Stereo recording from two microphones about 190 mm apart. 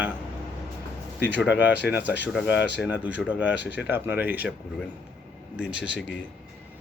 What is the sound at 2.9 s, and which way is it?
Speech, 5° right (ahead or behind).